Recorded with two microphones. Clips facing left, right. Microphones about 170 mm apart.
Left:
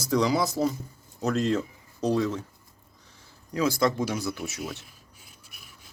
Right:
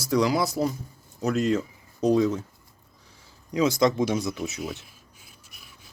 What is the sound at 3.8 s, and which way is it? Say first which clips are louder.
Speech: right 3 dB; 20° right (ahead or behind).